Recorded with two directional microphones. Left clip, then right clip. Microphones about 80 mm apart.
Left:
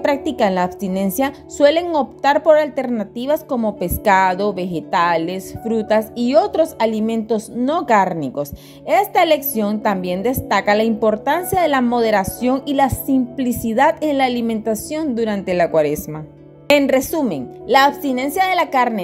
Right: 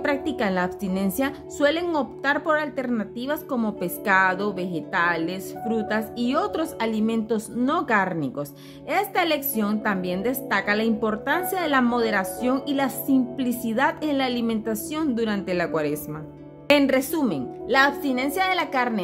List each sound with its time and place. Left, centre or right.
0.0 s a woman's voice: left
3.8 s a woman's voice: left
4.4 s a woman's voice: left